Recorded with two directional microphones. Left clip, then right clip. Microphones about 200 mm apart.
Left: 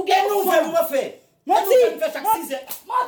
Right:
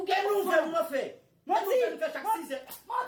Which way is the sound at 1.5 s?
50° left (ahead or behind).